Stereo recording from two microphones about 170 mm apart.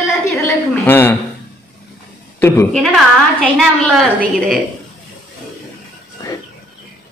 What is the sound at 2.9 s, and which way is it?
A woman's voice, centre (ahead or behind).